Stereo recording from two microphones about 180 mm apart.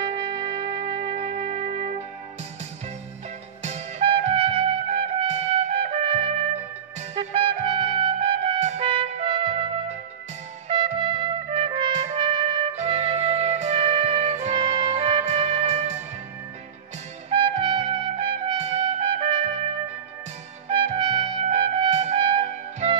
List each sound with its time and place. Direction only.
0.0 s music: 30° right (ahead or behind)
3.6 s trumpet: 35° right (ahead or behind)
11.1 s trumpet: 30° right (ahead or behind)
17.3 s trumpet: 30° right (ahead or behind)
20.7 s trumpet: 30° right (ahead or behind)